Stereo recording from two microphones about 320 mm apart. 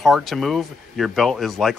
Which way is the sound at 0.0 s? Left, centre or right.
Centre.